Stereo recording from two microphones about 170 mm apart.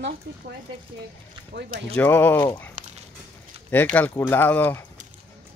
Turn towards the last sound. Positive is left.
turn(degrees=10)  # may be behind; listen again after turning